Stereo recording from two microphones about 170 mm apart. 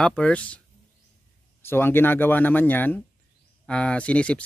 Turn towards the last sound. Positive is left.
turn(degrees=5)  # may be behind; listen again after turning